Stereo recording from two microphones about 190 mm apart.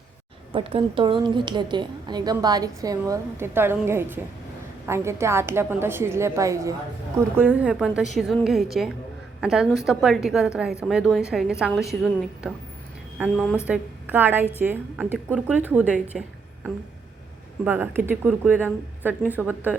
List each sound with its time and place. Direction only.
0.5 s a woman's voice: 30° right (ahead or behind); by 16.2 s 10° right (ahead or behind)
17.7 s speech: 10° right (ahead or behind)